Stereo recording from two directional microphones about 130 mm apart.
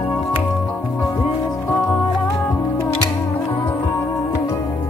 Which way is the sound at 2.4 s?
15° left (ahead or behind).